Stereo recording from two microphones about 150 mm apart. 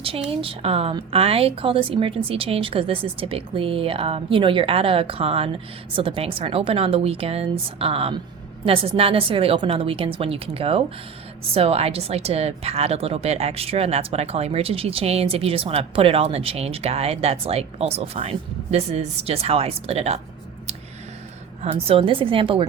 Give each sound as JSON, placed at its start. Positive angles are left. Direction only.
{"t": 0.3, "sound": "a woman's voice", "side_deg": -40}
{"t": 21.6, "sound": "a woman's voice", "side_deg": -40}